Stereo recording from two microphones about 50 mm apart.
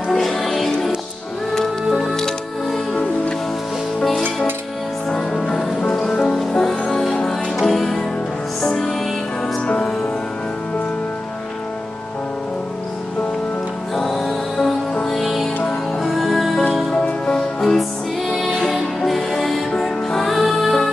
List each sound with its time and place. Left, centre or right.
0.1 s music: centre
5.1 s music: centre
13.9 s music: centre
16.9 s music: left
17.6 s music: centre